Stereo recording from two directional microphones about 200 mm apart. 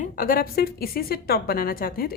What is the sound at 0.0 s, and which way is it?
Speech, 45° left (ahead or behind).